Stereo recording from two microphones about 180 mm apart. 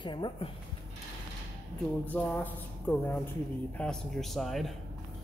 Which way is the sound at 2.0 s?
10° left (ahead or behind).